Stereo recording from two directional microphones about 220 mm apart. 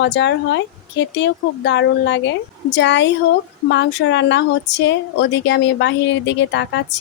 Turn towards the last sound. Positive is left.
turn(degrees=55)  # may be behind; listen again after turning